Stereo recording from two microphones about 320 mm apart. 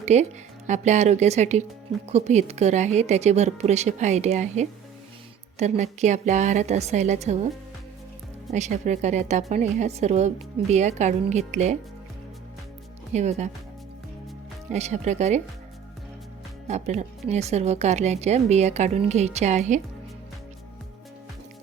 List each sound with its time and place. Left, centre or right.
0.0 s speech: right
8.4 s speech: right
13.1 s speech: right
14.7 s speech: right
16.6 s speech: right